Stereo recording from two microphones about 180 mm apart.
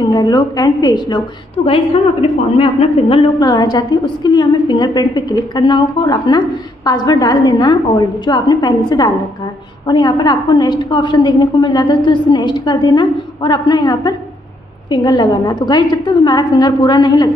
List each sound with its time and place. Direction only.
0.0 s a woman's voice: 20° left (ahead or behind)
2.2 s a woman's voice: 35° left (ahead or behind)